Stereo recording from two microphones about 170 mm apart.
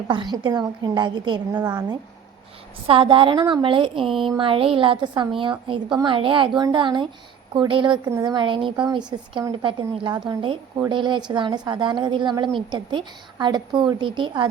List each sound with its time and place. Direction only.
0.1 s a woman's voice: 25° right (ahead or behind)
2.8 s a woman's voice: 30° right (ahead or behind)
4.2 s a sound: 30° right (ahead or behind)
5.4 s a woman's voice: 30° right (ahead or behind)